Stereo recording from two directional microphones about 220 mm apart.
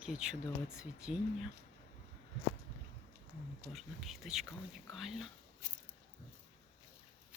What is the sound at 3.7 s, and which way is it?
Speech, centre (ahead or behind).